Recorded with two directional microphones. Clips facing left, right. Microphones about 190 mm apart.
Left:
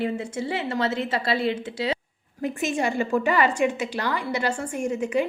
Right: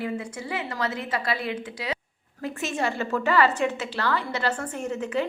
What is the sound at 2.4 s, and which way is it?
A woman's voice, 15° left (ahead or behind).